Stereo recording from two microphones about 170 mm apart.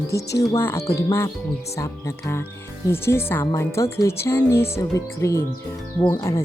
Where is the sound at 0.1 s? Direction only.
20° left (ahead or behind).